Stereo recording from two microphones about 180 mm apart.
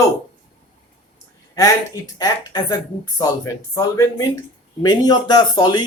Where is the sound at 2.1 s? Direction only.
20° left (ahead or behind).